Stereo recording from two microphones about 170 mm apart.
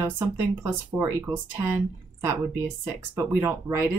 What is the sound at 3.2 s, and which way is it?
Speech, 15° right (ahead or behind).